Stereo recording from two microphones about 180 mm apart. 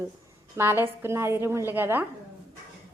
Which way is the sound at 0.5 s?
10° right (ahead or behind).